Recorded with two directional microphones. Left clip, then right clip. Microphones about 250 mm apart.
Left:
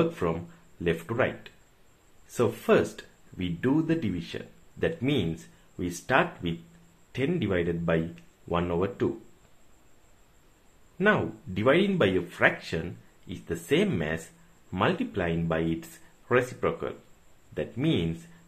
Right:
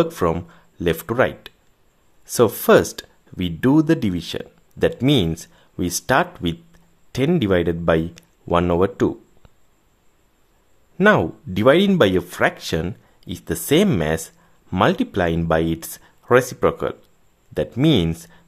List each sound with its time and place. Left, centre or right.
0.0 s speech: right
11.0 s speech: right